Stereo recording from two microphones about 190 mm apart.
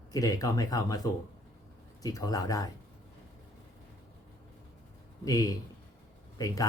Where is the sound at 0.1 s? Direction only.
20° left (ahead or behind).